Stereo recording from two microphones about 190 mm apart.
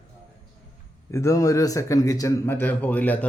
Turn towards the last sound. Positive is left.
turn(degrees=10)  # may be behind; listen again after turning